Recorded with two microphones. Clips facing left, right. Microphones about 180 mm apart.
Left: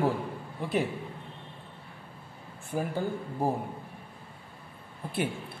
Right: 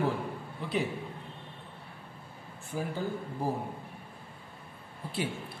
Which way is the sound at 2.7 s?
55° left (ahead or behind).